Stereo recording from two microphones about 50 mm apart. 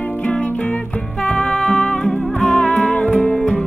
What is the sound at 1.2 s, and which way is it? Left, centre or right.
Music, centre.